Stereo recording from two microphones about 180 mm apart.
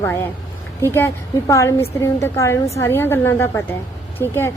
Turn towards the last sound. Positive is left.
turn(degrees=15)  # may be behind; listen again after turning